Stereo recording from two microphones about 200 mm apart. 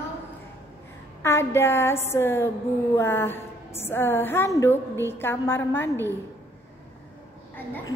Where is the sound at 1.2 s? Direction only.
10° left (ahead or behind).